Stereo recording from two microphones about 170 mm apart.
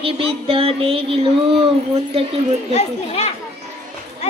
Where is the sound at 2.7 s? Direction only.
40° left (ahead or behind).